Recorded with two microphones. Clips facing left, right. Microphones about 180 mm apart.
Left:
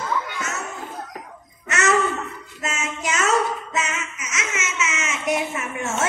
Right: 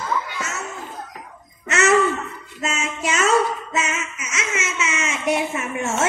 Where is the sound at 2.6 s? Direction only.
25° right (ahead or behind).